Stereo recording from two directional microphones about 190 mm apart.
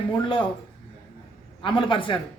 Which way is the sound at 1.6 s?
25° left (ahead or behind).